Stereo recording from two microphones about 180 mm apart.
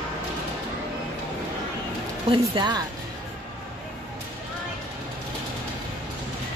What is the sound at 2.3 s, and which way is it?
Speech, 25° right (ahead or behind).